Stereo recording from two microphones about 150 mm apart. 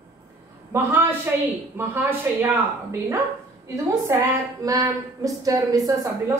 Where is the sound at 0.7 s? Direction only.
15° right (ahead or behind).